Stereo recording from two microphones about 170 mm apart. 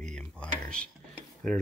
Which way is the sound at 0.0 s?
5° left (ahead or behind).